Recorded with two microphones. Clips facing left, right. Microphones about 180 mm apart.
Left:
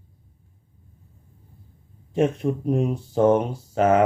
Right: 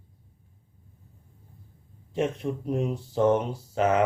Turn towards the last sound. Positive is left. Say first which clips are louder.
# left 5 dB
turn(degrees=45)  # may be behind; listen again after turning